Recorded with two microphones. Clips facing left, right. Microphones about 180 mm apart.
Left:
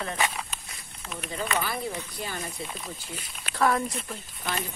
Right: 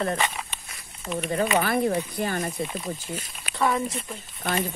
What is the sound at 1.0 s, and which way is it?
Speech, centre (ahead or behind).